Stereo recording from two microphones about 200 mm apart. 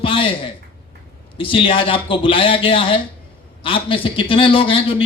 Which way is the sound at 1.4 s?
25° left (ahead or behind).